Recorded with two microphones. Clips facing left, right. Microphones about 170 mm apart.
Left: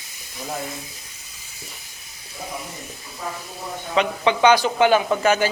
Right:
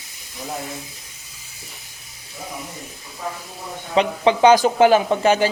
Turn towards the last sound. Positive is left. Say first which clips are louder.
# right 2 dB
turn(degrees=-30)  # may be behind; listen again after turning